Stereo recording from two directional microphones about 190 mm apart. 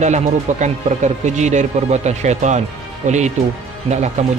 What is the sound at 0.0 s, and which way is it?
Speech, 35° right (ahead or behind).